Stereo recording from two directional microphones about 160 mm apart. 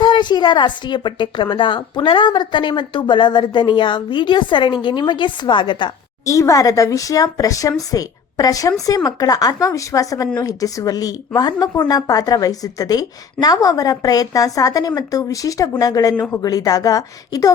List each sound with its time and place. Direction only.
0.0 s speech: 30° left (ahead or behind)